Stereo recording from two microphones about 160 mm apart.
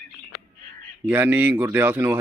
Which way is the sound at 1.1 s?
15° right (ahead or behind).